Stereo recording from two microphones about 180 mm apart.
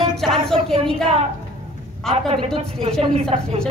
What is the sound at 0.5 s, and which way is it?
Speech, 30° right (ahead or behind).